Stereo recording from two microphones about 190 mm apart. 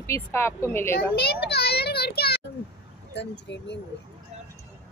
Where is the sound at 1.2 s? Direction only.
55° left (ahead or behind).